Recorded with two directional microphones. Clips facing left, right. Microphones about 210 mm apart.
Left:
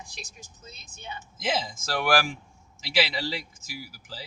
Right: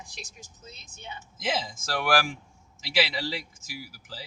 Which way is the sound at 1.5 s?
25° left (ahead or behind).